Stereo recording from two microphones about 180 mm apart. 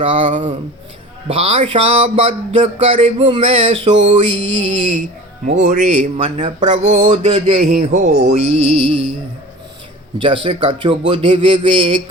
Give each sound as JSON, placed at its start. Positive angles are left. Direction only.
{"t": 0.0, "sound": "speech", "side_deg": -30}
{"t": 4.3, "sound": "mantra", "side_deg": -90}
{"t": 5.5, "sound": "speech", "side_deg": -45}
{"t": 6.2, "sound": "speech", "side_deg": -35}
{"t": 7.1, "sound": "a man's voice", "side_deg": -30}
{"t": 7.6, "sound": "speech", "side_deg": -45}
{"t": 10.2, "sound": "a man's voice", "side_deg": -30}